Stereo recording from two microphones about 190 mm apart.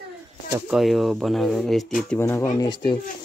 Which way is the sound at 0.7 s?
Centre (ahead or behind).